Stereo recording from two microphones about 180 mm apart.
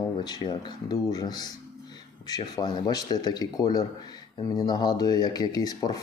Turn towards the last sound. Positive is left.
turn(degrees=20)  # may be behind; listen again after turning